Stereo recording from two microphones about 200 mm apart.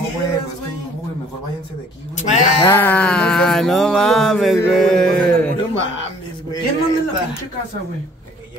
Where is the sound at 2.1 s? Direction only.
35° left (ahead or behind).